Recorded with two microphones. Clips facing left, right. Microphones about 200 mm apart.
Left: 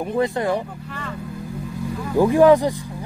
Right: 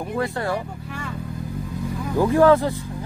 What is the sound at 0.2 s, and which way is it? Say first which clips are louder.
Speech: left 4 dB; 20° left (ahead or behind).